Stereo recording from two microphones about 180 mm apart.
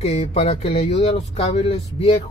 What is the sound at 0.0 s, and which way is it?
Speech, 35° left (ahead or behind).